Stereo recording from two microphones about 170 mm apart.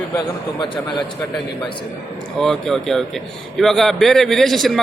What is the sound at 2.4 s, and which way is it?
A man's voice, centre (ahead or behind).